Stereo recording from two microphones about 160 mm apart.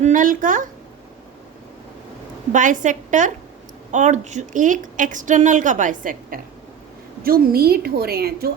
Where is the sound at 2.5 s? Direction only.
55° right (ahead or behind).